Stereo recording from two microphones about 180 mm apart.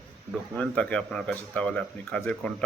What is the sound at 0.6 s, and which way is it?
Speech, 5° left (ahead or behind).